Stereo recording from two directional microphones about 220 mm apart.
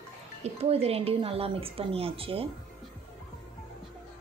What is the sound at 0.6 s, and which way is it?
A woman's voice, 25° right (ahead or behind).